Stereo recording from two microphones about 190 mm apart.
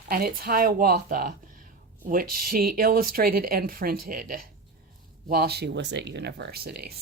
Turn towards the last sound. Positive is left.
turn(degrees=-55)  # may be behind; listen again after turning